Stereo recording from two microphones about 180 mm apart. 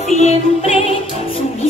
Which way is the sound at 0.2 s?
35° left (ahead or behind).